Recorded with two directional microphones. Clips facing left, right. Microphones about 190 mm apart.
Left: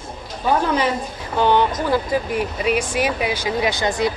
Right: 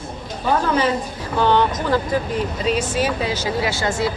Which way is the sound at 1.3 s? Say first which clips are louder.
Even; 15° left (ahead or behind).